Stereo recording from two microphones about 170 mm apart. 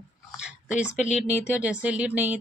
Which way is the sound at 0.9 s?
40° left (ahead or behind).